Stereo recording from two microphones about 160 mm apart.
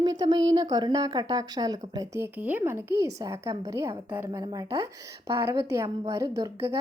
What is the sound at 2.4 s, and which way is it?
A woman's voice, 10° right (ahead or behind).